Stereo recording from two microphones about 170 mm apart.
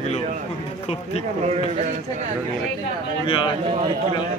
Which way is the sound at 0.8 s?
35° left (ahead or behind).